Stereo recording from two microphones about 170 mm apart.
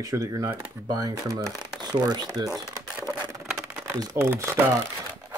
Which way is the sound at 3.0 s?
25° right (ahead or behind).